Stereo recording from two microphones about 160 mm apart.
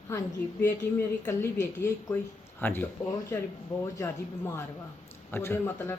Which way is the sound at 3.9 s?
15° left (ahead or behind).